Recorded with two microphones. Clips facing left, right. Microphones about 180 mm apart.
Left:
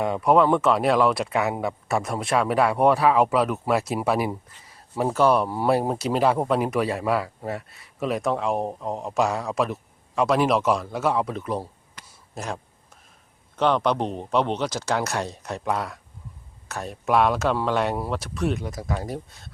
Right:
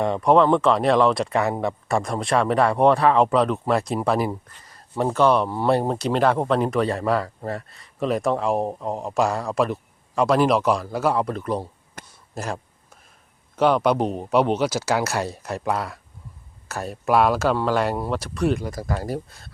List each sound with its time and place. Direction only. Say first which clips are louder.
0.0 s speech: right 2 dB; 5° left (ahead or behind)
12.0 s a sound: right 6 dB; 50° right (ahead or behind)
12.3 s speech: right 2 dB; centre (ahead or behind)
13.6 s speech: right 3 dB; 5° right (ahead or behind)